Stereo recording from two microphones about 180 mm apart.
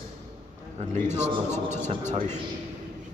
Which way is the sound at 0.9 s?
40° right (ahead or behind).